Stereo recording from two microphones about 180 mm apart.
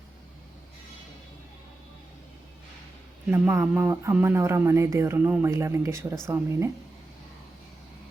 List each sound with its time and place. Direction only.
3.3 s speech: 10° right (ahead or behind)